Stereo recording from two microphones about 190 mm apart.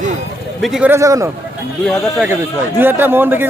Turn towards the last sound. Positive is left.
turn(degrees=-10)  # may be behind; listen again after turning